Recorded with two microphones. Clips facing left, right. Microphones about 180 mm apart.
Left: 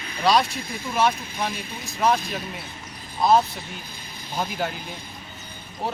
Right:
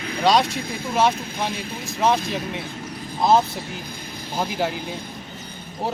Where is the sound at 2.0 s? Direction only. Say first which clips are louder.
Right 2 dB; 25° right (ahead or behind).